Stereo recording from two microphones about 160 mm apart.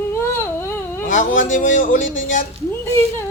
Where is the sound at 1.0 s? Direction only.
55° left (ahead or behind).